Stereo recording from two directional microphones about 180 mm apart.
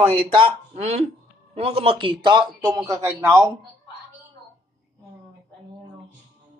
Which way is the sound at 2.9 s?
15° right (ahead or behind).